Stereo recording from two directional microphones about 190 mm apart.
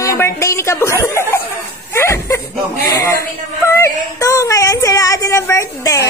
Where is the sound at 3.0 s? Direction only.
15° left (ahead or behind).